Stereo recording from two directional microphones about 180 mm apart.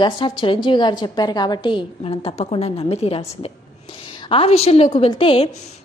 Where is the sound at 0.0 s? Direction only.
25° left (ahead or behind).